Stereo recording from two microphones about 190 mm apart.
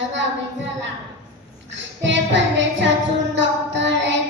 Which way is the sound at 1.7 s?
70° right (ahead or behind).